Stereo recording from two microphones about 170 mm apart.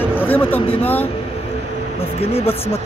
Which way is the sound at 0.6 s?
35° left (ahead or behind).